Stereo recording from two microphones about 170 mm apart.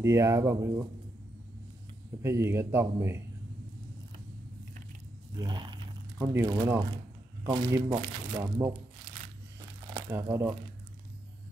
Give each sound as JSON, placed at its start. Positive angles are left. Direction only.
{"t": 0.0, "sound": "speech", "side_deg": -15}
{"t": 2.2, "sound": "speech", "side_deg": -15}
{"t": 5.4, "sound": "speech", "side_deg": -25}
{"t": 8.4, "sound": "speech", "side_deg": -10}
{"t": 9.9, "sound": "speech", "side_deg": -15}